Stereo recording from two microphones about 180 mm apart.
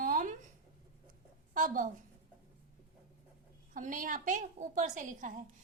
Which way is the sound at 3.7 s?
50° right (ahead or behind).